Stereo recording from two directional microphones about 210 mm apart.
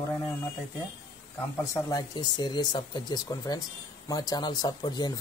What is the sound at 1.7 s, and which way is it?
Speech, 15° left (ahead or behind).